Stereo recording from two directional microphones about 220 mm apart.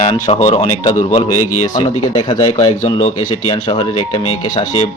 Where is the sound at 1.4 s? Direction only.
90° left.